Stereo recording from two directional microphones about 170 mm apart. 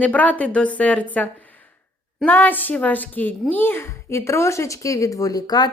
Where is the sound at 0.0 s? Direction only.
10° left (ahead or behind).